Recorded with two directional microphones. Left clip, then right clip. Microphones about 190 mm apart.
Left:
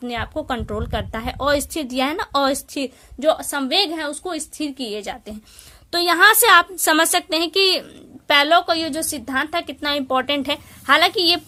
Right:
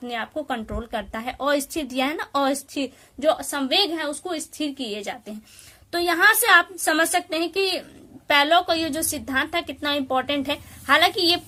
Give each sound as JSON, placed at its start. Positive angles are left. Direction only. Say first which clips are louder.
{"t": 0.0, "sound": "a woman's voice", "louder": "left 3 dB", "side_deg": 35}